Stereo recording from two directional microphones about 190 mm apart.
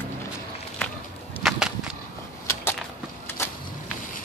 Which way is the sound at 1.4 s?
5° right (ahead or behind).